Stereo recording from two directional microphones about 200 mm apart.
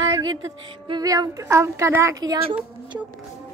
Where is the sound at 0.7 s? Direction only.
20° right (ahead or behind).